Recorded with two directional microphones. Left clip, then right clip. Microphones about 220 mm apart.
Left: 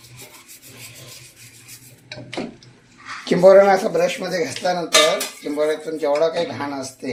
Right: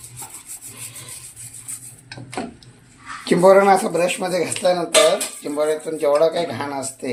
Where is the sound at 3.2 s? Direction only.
25° right (ahead or behind).